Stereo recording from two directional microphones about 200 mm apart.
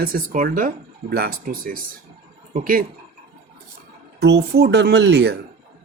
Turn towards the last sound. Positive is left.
turn(degrees=-60)  # may be behind; listen again after turning